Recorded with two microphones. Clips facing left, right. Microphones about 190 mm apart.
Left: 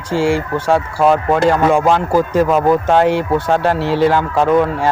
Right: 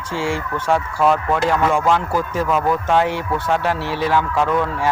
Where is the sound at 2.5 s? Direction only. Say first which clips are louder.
Left 5 dB; 35° left (ahead or behind).